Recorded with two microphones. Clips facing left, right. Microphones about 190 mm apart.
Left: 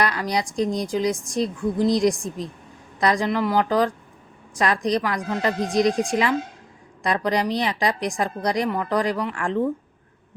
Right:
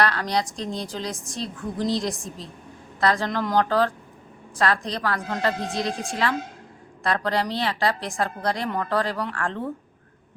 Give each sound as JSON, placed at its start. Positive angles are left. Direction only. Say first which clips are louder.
{"t": 0.0, "sound": "a woman's voice", "louder": "even", "side_deg": 10}